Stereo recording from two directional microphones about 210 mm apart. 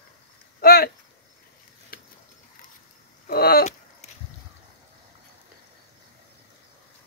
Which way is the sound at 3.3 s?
45° left (ahead or behind).